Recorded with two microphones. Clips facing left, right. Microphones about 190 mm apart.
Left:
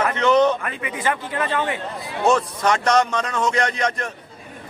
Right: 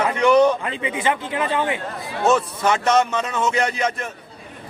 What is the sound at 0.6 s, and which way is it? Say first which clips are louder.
A man's voice: right 2 dB; 20° right (ahead or behind).